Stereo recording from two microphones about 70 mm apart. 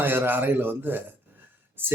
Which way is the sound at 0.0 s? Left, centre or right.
Right.